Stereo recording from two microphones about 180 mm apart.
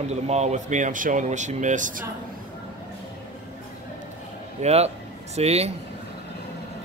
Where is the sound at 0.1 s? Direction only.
40° right (ahead or behind).